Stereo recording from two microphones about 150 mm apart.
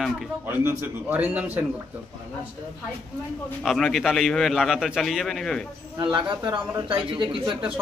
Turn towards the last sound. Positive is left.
turn(degrees=-35)  # may be behind; listen again after turning